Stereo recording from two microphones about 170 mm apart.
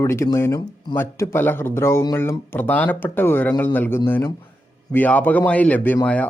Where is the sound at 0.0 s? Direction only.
15° left (ahead or behind).